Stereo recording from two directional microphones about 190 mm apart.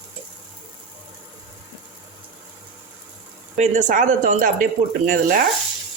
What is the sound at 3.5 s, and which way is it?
Speech, 40° right (ahead or behind).